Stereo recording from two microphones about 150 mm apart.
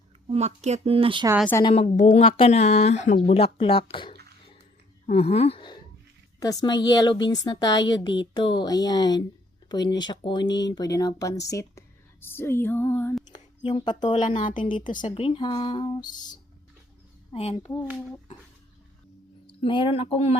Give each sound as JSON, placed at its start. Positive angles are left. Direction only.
{"t": 0.3, "sound": "speech", "side_deg": -45}
{"t": 1.7, "sound": "speech", "side_deg": 50}
{"t": 2.2, "sound": "speech", "side_deg": 35}
{"t": 6.4, "sound": "a woman's voice", "side_deg": 25}
{"t": 12.2, "sound": "female singing", "side_deg": 15}
{"t": 13.3, "sound": "speech", "side_deg": 30}
{"t": 14.3, "sound": "a woman's voice", "side_deg": 60}
{"t": 14.6, "sound": "speech", "side_deg": 35}
{"t": 14.8, "sound": "a woman's voice", "side_deg": 60}
{"t": 15.1, "sound": "speech", "side_deg": 35}
{"t": 19.5, "sound": "speech", "side_deg": 35}